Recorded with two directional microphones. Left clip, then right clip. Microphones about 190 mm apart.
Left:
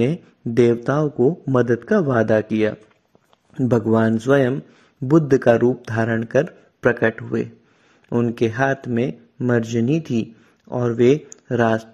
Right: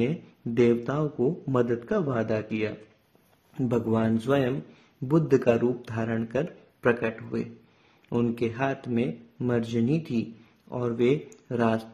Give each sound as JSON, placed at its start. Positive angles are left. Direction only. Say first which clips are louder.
{"t": 0.0, "sound": "speech", "louder": "left 7 dB", "side_deg": 40}